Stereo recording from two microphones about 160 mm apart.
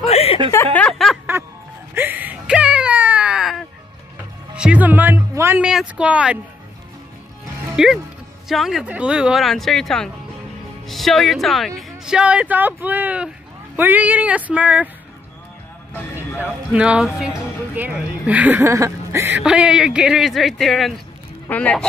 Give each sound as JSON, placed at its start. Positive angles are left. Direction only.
{"t": 0.0, "sound": "a sound", "side_deg": 40}
{"t": 0.7, "sound": "speech", "side_deg": 5}
{"t": 2.0, "sound": "whimper", "side_deg": -10}
{"t": 4.6, "sound": "speech", "side_deg": -10}
{"t": 7.7, "sound": "speech", "side_deg": -5}
{"t": 16.2, "sound": "speech", "side_deg": -10}